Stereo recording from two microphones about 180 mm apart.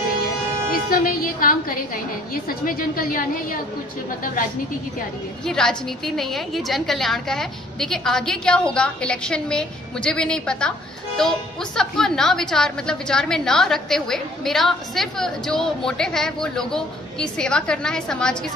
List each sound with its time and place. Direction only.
0.8 s a woman's voice: 55° left (ahead or behind)
5.4 s a woman's voice: 5° left (ahead or behind)